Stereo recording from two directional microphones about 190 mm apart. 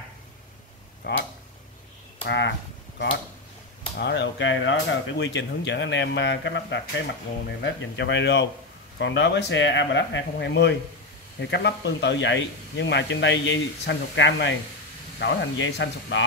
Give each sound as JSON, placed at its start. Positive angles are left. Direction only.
{"t": 1.1, "sound": "speech", "side_deg": 60}
{"t": 2.2, "sound": "speech", "side_deg": 70}
{"t": 4.0, "sound": "speech", "side_deg": 65}